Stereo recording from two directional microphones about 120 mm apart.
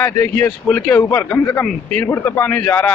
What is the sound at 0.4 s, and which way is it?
Speech, 10° left (ahead or behind).